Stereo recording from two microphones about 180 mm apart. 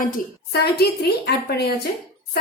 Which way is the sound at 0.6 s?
65° left (ahead or behind).